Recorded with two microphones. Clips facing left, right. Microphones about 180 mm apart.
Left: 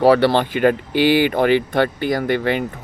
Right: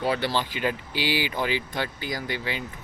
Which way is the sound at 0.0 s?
70° left (ahead or behind).